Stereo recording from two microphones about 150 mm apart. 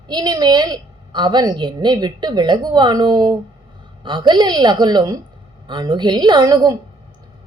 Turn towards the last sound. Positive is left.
turn(degrees=-25)  # may be behind; listen again after turning